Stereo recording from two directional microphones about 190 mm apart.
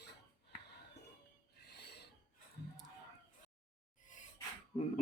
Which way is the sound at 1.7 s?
60° left (ahead or behind).